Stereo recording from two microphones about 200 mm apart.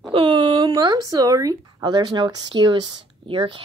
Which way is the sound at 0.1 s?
25° right (ahead or behind).